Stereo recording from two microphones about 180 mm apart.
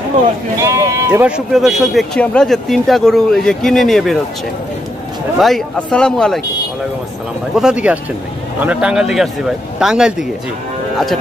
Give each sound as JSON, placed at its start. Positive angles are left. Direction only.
{"t": 0.6, "sound": "speech", "side_deg": -15}
{"t": 5.4, "sound": "speech", "side_deg": 5}
{"t": 7.5, "sound": "speech", "side_deg": -5}